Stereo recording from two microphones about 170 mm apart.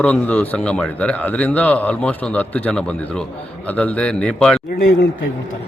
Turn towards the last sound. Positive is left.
turn(degrees=75)  # may be behind; listen again after turning